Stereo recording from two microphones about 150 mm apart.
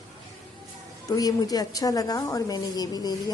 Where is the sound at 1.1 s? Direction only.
25° left (ahead or behind).